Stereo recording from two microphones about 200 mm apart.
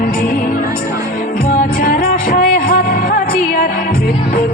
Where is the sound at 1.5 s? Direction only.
40° left (ahead or behind).